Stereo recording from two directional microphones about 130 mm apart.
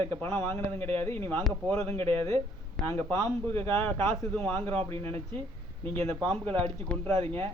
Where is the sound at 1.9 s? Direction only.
50° right (ahead or behind).